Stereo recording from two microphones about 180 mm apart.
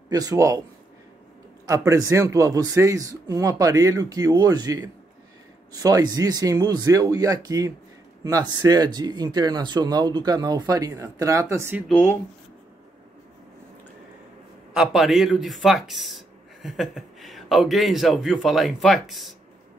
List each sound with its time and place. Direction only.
0.1 s speech: 20° right (ahead or behind)
1.7 s speech: 15° right (ahead or behind)
14.7 s speech: 5° right (ahead or behind)